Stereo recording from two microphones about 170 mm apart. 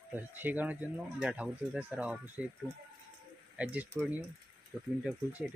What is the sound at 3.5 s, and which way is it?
Speech, 10° right (ahead or behind).